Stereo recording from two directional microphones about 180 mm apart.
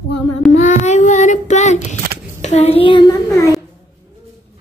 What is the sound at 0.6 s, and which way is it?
Child singing, 40° left (ahead or behind).